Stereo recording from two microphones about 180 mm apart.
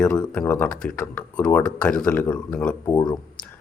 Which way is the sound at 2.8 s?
25° left (ahead or behind).